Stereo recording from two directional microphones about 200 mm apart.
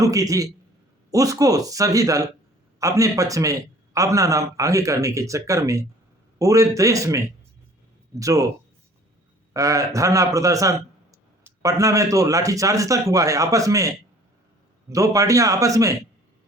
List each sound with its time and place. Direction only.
0.0 s a man's voice: 15° right (ahead or behind)
9.5 s a man's voice: 15° right (ahead or behind)